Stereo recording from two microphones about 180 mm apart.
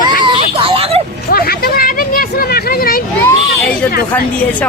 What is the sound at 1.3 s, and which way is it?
Speech, 55° left (ahead or behind).